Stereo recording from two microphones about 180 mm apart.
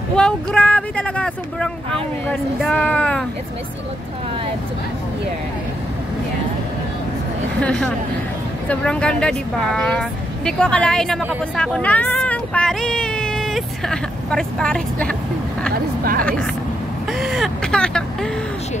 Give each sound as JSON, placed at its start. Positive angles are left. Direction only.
{"t": 0.1, "sound": "speech", "side_deg": 5}
{"t": 7.6, "sound": "speech", "side_deg": 5}
{"t": 15.7, "sound": "speech", "side_deg": -55}
{"t": 17.2, "sound": "vehicle", "side_deg": 0}